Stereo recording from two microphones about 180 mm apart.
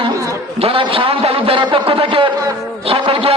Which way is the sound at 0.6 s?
30° right (ahead or behind).